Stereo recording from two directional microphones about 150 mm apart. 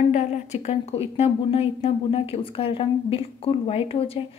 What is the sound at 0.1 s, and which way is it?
A woman's voice, 50° left (ahead or behind).